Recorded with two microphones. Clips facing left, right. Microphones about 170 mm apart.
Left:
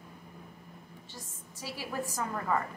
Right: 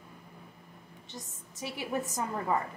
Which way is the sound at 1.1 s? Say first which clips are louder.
Right 6 dB; 20° right (ahead or behind).